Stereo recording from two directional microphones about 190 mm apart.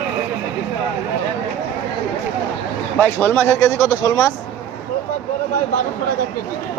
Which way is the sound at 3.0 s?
10° left (ahead or behind).